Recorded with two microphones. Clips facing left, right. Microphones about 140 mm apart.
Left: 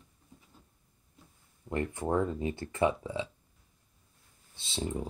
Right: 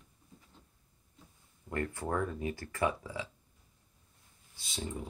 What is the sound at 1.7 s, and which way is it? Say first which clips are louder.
Speech: left 4 dB; 20° left (ahead or behind).